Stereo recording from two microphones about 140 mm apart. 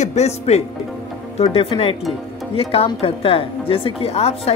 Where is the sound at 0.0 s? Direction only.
50° left (ahead or behind).